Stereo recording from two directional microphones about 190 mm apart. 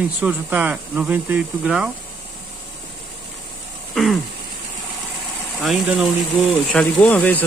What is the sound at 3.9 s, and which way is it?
Throat clearing, centre (ahead or behind).